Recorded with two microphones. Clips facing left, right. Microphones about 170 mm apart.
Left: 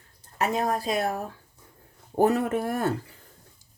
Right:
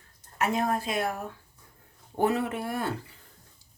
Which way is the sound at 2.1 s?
40° left (ahead or behind).